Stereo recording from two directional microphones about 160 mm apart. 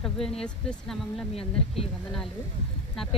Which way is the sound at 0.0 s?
5° left (ahead or behind).